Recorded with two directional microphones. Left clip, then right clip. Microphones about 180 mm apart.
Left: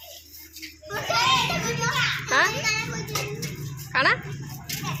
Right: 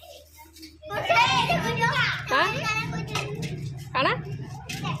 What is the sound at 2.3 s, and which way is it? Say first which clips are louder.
Children playing: left 3 dB; 5° right (ahead or behind).